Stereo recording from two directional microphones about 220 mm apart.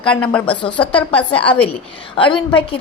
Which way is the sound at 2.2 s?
20° left (ahead or behind).